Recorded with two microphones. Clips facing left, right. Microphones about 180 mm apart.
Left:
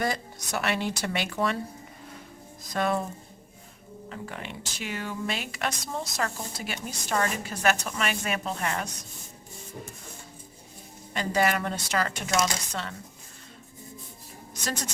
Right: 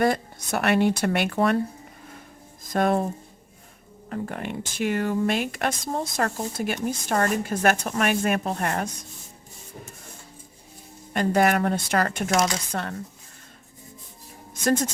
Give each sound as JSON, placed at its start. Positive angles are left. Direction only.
{"t": 0.0, "sound": "speech", "side_deg": -55}
{"t": 2.7, "sound": "speech", "side_deg": -50}
{"t": 4.1, "sound": "speech", "side_deg": -50}
{"t": 11.1, "sound": "speech", "side_deg": -55}
{"t": 14.6, "sound": "speech", "side_deg": -50}